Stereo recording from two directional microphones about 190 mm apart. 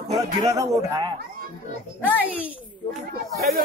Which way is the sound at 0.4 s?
20° right (ahead or behind).